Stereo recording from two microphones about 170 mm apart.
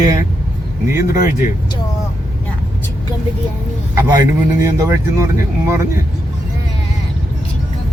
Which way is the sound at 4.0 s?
20° right (ahead or behind).